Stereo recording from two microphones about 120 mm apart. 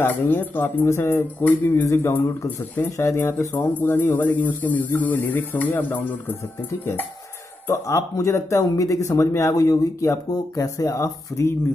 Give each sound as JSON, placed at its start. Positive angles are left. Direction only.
{"t": 0.0, "sound": "speech", "side_deg": 15}
{"t": 7.6, "sound": "speech", "side_deg": 25}